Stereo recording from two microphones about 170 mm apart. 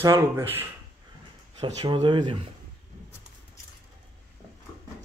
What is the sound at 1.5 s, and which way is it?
Speech, 25° right (ahead or behind).